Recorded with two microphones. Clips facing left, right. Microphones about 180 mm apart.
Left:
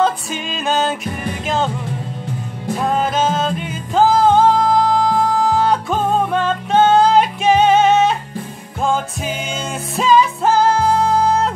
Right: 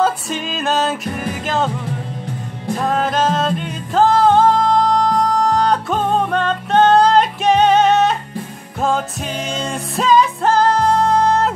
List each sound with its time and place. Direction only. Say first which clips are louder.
0.0 s music: even; centre (ahead or behind)
2.7 s music: even; centre (ahead or behind)